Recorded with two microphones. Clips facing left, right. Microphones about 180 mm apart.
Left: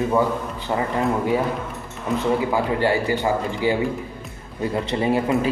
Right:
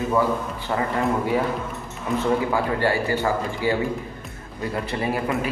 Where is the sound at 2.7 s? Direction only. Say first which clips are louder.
Left 2 dB; 20° left (ahead or behind).